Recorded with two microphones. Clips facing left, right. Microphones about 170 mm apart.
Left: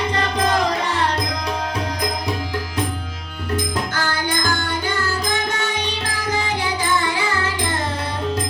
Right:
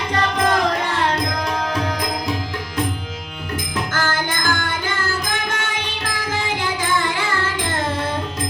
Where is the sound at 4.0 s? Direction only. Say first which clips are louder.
Right 2 dB; 50° right (ahead or behind).